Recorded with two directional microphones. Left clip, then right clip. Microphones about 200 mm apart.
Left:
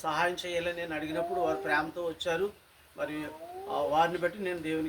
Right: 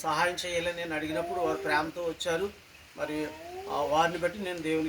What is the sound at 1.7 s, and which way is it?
Speech, 10° right (ahead or behind).